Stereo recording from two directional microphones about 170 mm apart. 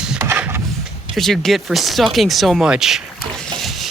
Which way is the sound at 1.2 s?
Centre (ahead or behind).